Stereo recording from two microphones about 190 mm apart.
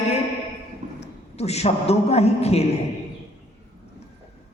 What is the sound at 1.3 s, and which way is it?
A woman's voice, 35° left (ahead or behind).